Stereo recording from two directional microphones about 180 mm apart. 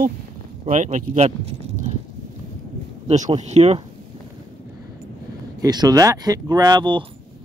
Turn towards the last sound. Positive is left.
turn(degrees=-25)  # may be behind; listen again after turning